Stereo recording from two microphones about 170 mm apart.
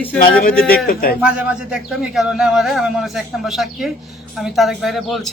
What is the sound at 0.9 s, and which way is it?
Speech, 60° left (ahead or behind).